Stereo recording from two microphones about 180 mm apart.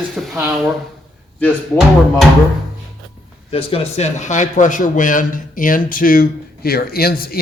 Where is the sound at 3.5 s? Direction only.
30° left (ahead or behind).